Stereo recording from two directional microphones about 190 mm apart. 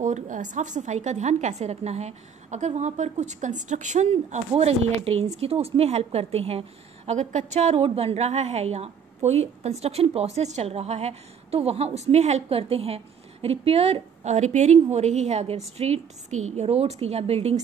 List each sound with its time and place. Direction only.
0.0 s a woman's voice: 40° right (ahead or behind)